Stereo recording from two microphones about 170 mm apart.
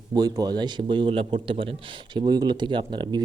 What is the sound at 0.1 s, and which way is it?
Speech, 20° right (ahead or behind).